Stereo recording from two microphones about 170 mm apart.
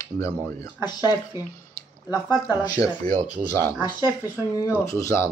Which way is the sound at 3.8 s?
15° right (ahead or behind).